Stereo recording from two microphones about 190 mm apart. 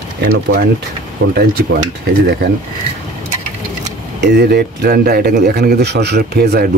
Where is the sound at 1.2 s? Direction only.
55° right (ahead or behind).